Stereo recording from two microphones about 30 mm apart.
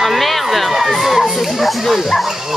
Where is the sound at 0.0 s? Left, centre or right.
Centre.